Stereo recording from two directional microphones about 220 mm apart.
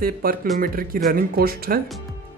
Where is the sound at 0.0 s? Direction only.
40° right (ahead or behind).